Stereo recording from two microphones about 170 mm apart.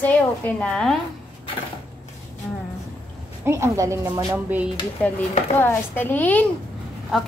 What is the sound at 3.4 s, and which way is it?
A woman's voice, 15° right (ahead or behind).